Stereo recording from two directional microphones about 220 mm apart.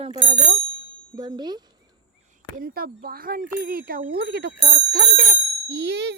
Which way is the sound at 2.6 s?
40° right (ahead or behind).